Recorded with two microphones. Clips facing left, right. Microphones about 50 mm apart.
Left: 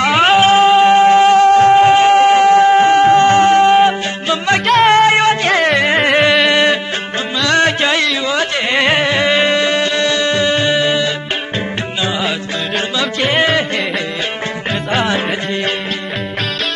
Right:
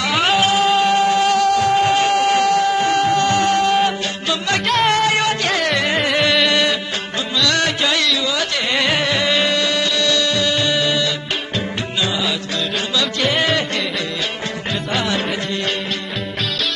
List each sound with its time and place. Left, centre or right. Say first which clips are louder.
0.0 s music: left 6 dB; left